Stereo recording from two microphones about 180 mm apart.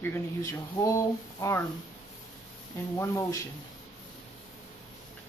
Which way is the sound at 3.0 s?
15° left (ahead or behind).